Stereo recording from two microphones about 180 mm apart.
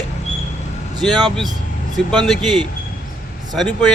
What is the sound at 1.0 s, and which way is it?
Speech, centre (ahead or behind).